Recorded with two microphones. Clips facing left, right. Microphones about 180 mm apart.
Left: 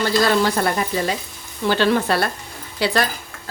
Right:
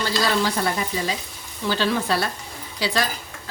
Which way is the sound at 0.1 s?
55° left (ahead or behind).